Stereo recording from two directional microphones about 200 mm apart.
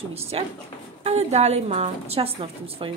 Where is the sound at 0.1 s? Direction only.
30° right (ahead or behind).